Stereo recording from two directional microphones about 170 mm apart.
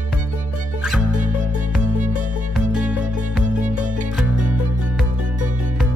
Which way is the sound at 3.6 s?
45° right (ahead or behind).